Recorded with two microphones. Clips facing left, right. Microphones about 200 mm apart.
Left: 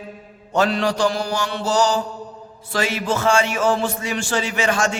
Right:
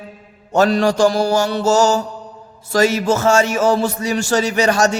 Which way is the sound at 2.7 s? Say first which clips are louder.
Right 7 dB; 40° right (ahead or behind).